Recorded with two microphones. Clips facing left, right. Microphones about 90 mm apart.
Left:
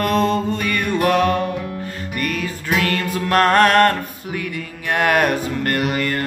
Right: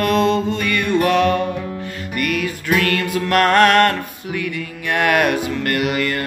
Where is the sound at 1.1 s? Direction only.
45° left (ahead or behind).